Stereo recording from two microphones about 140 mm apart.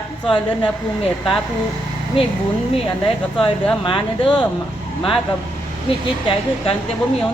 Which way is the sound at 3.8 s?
35° left (ahead or behind).